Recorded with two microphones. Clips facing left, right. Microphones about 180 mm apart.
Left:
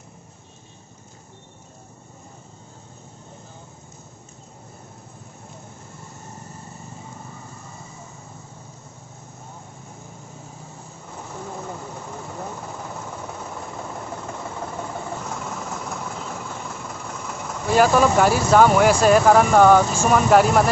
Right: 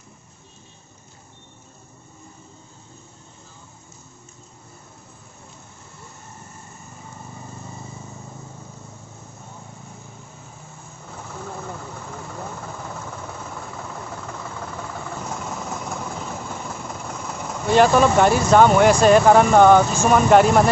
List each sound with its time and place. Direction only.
17.6 s speech: 5° left (ahead or behind)